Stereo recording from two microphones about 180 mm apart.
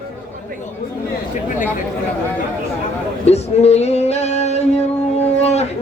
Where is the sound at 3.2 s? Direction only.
35° left (ahead or behind).